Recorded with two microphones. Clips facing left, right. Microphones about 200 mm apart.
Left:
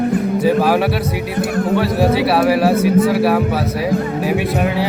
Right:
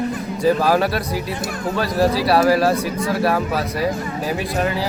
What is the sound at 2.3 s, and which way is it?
Speech, centre (ahead or behind).